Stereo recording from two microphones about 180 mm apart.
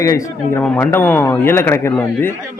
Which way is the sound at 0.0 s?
20° left (ahead or behind).